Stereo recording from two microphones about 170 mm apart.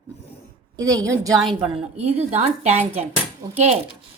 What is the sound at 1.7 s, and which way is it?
Speech, 40° right (ahead or behind).